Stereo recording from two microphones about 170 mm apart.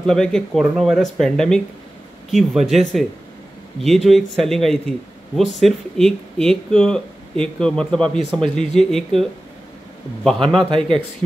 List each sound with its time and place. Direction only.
0.0 s a man's voice: 5° left (ahead or behind)
10.7 s speech: 30° right (ahead or behind)